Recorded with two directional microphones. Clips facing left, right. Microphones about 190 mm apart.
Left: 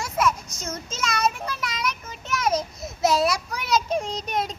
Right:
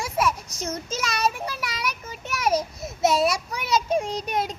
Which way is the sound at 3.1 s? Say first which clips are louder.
Even; 25° right (ahead or behind).